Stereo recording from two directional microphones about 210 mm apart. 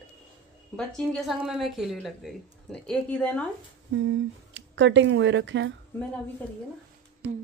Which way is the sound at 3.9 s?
65° right (ahead or behind).